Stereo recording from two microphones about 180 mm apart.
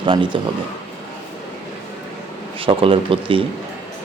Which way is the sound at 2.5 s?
30° right (ahead or behind).